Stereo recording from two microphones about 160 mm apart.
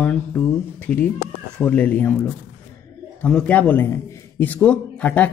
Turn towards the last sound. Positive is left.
turn(degrees=5)  # may be behind; listen again after turning